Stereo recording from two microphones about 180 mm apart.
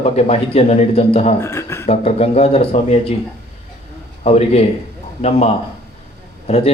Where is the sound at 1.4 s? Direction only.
15° left (ahead or behind).